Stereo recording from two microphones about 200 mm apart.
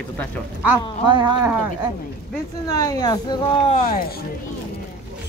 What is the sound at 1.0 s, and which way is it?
Speech, 20° right (ahead or behind).